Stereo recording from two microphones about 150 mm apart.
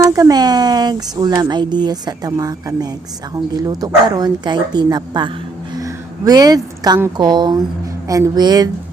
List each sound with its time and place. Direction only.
0.0 s speech: 20° right (ahead or behind)
5.7 s a sound: 25° right (ahead or behind)
7.2 s speech: 30° right (ahead or behind)